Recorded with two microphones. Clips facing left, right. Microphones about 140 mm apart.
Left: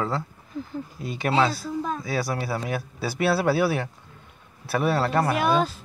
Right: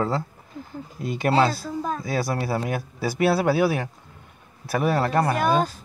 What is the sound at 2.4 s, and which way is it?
Speech, 25° right (ahead or behind).